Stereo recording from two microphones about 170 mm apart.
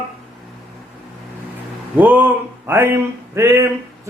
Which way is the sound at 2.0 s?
10° right (ahead or behind).